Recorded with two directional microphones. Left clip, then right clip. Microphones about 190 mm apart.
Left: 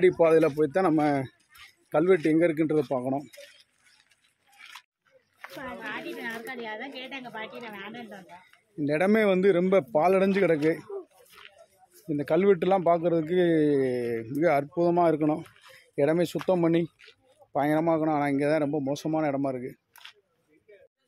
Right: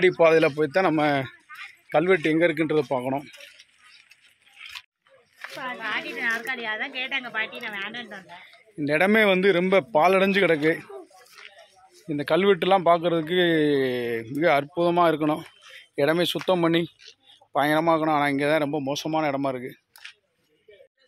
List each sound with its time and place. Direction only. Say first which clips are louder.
0.0 s a man's voice: right 3 dB; 10° left (ahead or behind)
5.6 s a sound: right 7 dB; 25° left (ahead or behind)
6.1 s a woman's voice: right 9 dB; 15° left (ahead or behind)
7.7 s a man's voice: right 7 dB; centre (ahead or behind)
12.1 s speech: right 2 dB; 10° left (ahead or behind)
15.3 s a sound: right 3 dB; 5° left (ahead or behind)
16.4 s speech: right 2 dB; 10° left (ahead or behind)